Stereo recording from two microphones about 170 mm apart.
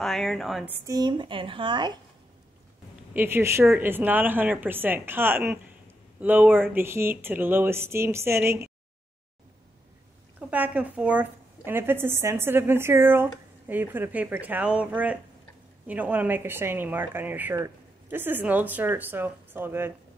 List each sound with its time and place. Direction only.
0.0 s a woman's voice: centre (ahead or behind)
0.7 s a woman's voice: 10° right (ahead or behind)
0.9 s speech: 25° right (ahead or behind)
3.1 s a woman's voice: 10° right (ahead or behind)
10.5 s a woman's voice: 10° right (ahead or behind)